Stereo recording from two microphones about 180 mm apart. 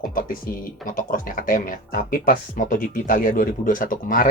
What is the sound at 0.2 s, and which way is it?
Speech, 50° left (ahead or behind).